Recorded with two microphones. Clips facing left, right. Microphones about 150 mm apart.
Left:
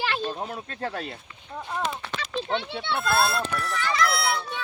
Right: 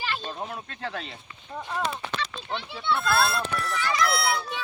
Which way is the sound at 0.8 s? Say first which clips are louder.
Left 4 dB; 45° left (ahead or behind).